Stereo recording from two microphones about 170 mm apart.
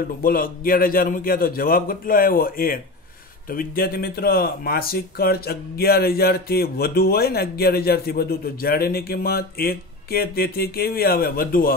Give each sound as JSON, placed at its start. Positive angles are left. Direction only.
{"t": 0.2, "sound": "speech", "side_deg": 60}